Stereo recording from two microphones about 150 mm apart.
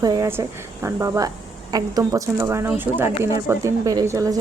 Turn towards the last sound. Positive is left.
turn(degrees=-20)  # may be behind; listen again after turning